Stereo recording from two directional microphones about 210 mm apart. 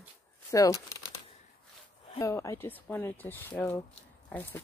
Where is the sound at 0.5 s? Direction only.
15° left (ahead or behind).